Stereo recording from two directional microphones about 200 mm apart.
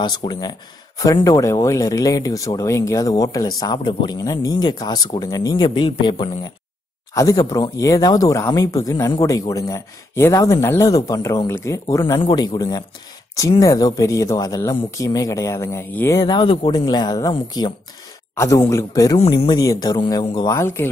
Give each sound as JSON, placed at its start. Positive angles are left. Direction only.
{"t": 0.0, "sound": "speech", "side_deg": 20}